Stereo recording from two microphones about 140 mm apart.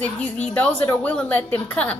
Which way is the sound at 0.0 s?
10° left (ahead or behind).